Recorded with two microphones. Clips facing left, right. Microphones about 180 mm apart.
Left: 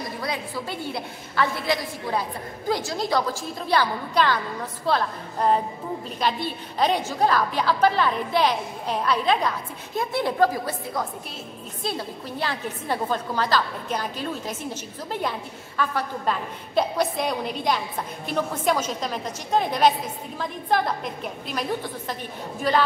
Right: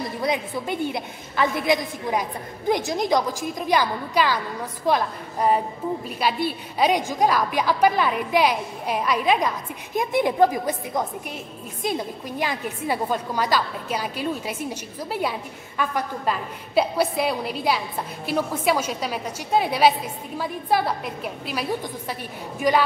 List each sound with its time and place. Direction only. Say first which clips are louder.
0.2 s a woman's voice: right 6 dB; 20° right (ahead or behind)